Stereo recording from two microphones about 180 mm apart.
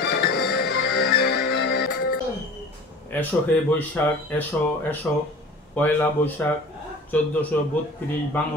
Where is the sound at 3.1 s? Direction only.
10° left (ahead or behind).